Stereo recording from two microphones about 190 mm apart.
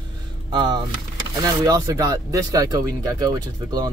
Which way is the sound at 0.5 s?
25° right (ahead or behind).